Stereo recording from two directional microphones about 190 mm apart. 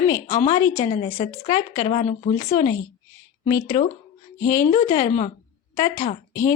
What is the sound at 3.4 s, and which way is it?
A woman's voice, 15° left (ahead or behind).